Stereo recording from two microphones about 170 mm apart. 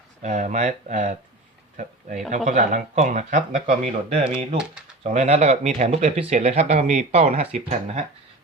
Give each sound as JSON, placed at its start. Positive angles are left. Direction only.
{"t": 0.2, "sound": "speech", "side_deg": -45}